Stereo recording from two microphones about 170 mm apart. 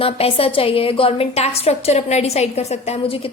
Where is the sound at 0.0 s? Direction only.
35° left (ahead or behind).